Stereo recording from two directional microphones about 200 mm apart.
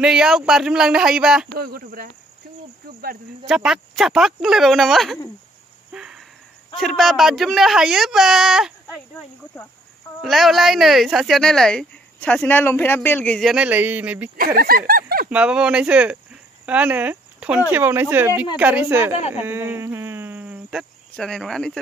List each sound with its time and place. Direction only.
0.0 s speech: 5° right (ahead or behind)
1.5 s speech: 45° right (ahead or behind)
3.4 s speech: centre (ahead or behind)
5.9 s a sound: 5° right (ahead or behind)
6.8 s speech: centre (ahead or behind)
10.2 s speech: centre (ahead or behind)
14.3 s speech: 45° right (ahead or behind)
15.2 s a woman's voice: 5° right (ahead or behind)